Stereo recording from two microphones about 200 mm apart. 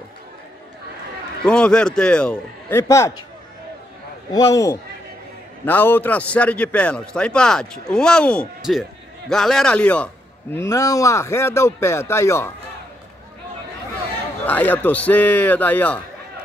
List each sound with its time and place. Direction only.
1.4 s a man's voice: 5° left (ahead or behind)
2.8 s a man's voice: 15° left (ahead or behind)
4.3 s a man's voice: 20° left (ahead or behind)
14.4 s a man's voice: 10° left (ahead or behind)